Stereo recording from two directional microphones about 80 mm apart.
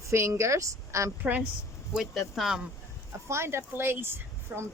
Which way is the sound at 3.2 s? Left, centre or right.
Right.